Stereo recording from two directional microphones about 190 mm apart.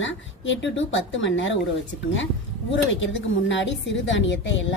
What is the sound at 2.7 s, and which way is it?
Speech, 80° left.